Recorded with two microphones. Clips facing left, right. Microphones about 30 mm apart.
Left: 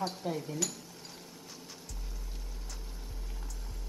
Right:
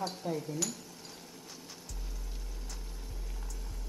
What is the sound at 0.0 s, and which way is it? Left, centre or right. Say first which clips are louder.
Speech: left 1 dB; centre.